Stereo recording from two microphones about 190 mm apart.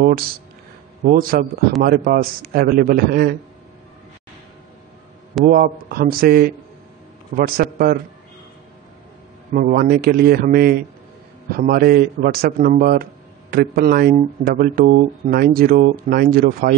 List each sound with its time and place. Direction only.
1.0 s a man's voice: 50° right (ahead or behind)
5.4 s a man's voice: 50° right (ahead or behind)
9.5 s a man's voice: 45° right (ahead or behind)